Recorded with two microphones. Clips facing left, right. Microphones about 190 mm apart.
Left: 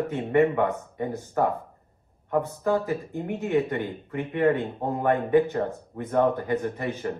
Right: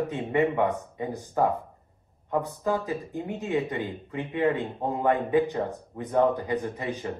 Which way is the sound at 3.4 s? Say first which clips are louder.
Left 3 dB; 15° right (ahead or behind).